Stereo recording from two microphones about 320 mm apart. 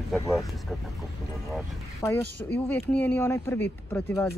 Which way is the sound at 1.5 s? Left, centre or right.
Centre.